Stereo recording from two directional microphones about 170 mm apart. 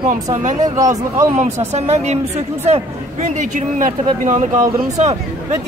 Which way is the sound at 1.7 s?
40° right (ahead or behind).